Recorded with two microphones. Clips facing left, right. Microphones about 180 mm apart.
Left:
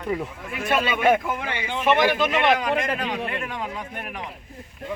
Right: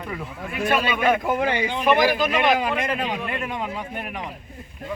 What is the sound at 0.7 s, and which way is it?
Speech, 25° left (ahead or behind).